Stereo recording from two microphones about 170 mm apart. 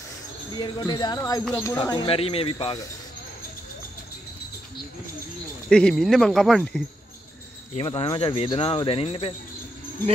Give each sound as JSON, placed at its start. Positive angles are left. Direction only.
{"t": 0.6, "sound": "speech", "side_deg": 25}
{"t": 1.8, "sound": "speech", "side_deg": 25}
{"t": 5.7, "sound": "speech", "side_deg": 5}
{"t": 7.7, "sound": "speech", "side_deg": 35}